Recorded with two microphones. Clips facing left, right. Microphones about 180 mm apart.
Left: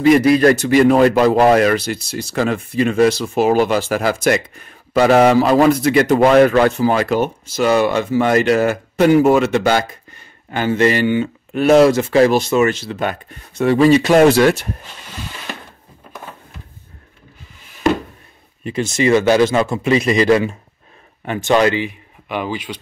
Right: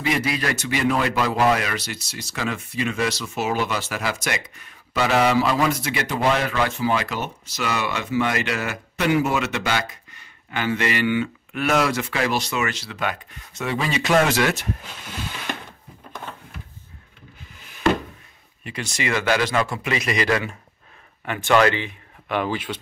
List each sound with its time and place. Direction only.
0.0 s speech: 45° left (ahead or behind)
5.9 s speech: 40° left (ahead or behind)
18.6 s speech: 25° left (ahead or behind)
21.7 s speech: 10° left (ahead or behind)